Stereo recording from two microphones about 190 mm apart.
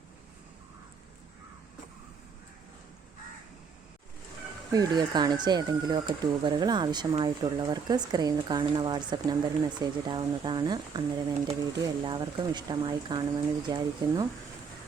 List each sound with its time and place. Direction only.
4.7 s speech: 20° right (ahead or behind)